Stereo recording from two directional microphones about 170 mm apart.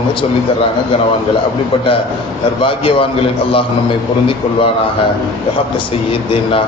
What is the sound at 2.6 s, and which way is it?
A man's voice, 30° left (ahead or behind).